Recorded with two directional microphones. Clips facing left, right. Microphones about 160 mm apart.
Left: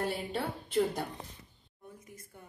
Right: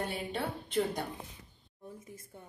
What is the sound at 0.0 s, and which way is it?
Speech, centre (ahead or behind).